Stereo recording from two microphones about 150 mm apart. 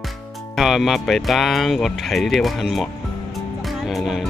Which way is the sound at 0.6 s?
Centre (ahead or behind).